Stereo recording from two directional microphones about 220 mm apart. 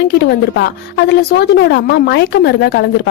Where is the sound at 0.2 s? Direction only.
50° left (ahead or behind).